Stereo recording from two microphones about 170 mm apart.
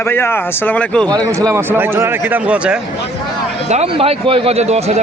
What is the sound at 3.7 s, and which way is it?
Speech, 35° right (ahead or behind).